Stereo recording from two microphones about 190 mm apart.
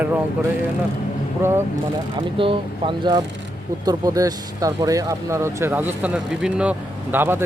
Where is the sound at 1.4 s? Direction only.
10° right (ahead or behind).